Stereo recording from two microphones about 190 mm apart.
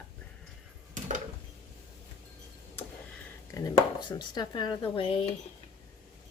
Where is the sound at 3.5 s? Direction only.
20° left (ahead or behind).